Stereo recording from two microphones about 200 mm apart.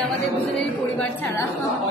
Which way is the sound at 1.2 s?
15° left (ahead or behind).